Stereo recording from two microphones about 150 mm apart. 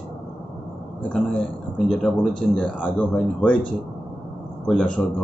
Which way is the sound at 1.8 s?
Centre (ahead or behind).